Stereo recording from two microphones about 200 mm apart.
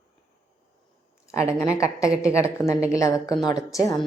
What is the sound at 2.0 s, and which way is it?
Speech, 5° right (ahead or behind).